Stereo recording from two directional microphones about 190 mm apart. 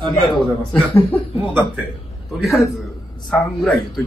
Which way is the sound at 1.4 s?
10° right (ahead or behind).